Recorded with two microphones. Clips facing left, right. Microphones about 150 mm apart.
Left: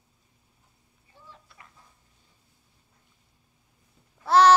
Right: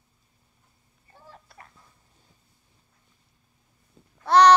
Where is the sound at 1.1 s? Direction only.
45° right (ahead or behind).